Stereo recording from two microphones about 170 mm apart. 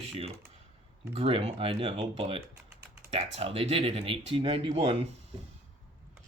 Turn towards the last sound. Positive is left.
turn(degrees=-30)  # may be behind; listen again after turning